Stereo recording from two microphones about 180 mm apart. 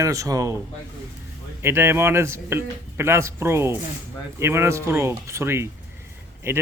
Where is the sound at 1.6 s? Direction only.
15° right (ahead or behind).